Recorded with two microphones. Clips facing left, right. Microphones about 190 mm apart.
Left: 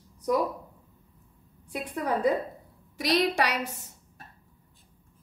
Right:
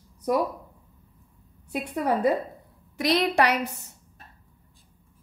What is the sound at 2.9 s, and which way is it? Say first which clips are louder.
Speech: right 3 dB; 60° right (ahead or behind).